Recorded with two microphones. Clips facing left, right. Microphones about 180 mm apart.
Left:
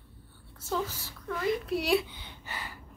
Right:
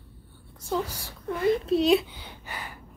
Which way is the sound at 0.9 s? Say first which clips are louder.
Right 4 dB; 70° right (ahead or behind).